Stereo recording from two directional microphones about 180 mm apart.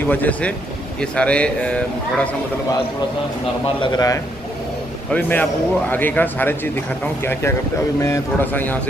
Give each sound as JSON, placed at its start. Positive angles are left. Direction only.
{"t": 0.1, "sound": "a man's voice", "side_deg": 10}
{"t": 3.8, "sound": "a man's voice", "side_deg": 20}
{"t": 5.1, "sound": "a man's voice", "side_deg": 10}
{"t": 8.0, "sound": "a man's voice", "side_deg": 15}